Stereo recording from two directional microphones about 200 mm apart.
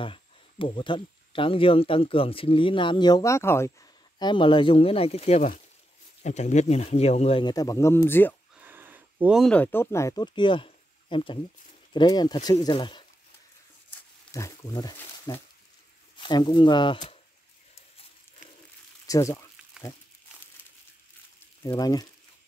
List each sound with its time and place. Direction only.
0.0 s speech: 25° left (ahead or behind)
4.2 s speech: 25° left (ahead or behind)
8.5 s speech: 10° right (ahead or behind); by 13.0 s 25° left (ahead or behind)
14.3 s speech: 15° left (ahead or behind)
19.0 s speech: 15° left (ahead or behind)
21.6 s speech: 20° left (ahead or behind)